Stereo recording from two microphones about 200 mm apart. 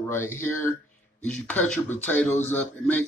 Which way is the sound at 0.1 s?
10° left (ahead or behind).